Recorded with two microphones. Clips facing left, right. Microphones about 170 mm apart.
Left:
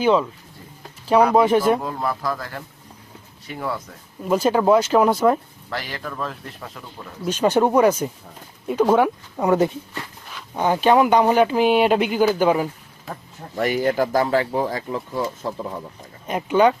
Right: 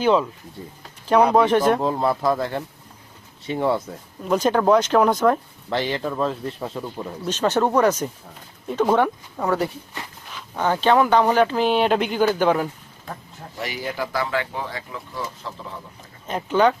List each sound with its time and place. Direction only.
1.3 s speech: 10° left (ahead or behind)
1.8 s speech: 25° right (ahead or behind)
4.2 s speech: 5° left (ahead or behind)
5.7 s speech: 25° right (ahead or behind)
7.3 s speech: 10° left (ahead or behind)
9.5 s speech: 20° left (ahead or behind); by 13.2 s 5° left (ahead or behind)
13.6 s speech: 50° left (ahead or behind)
16.2 s speech: 10° left (ahead or behind)